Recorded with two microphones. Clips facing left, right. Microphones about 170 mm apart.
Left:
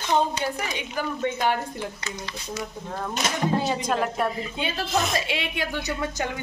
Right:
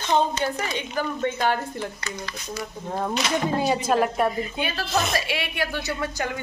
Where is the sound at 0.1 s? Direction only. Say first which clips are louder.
Right 1 dB; 10° left (ahead or behind).